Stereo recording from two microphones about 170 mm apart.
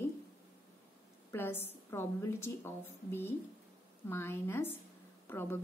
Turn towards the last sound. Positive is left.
turn(degrees=15)  # may be behind; listen again after turning